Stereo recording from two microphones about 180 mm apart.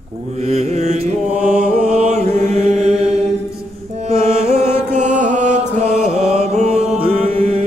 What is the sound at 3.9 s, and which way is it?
Music, 35° right (ahead or behind).